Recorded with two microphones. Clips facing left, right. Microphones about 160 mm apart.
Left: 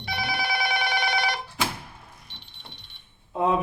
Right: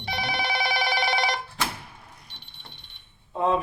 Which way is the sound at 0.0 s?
25° right (ahead or behind).